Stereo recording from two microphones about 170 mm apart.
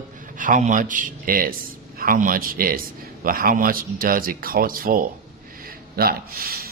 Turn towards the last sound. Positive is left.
turn(degrees=-60)  # may be behind; listen again after turning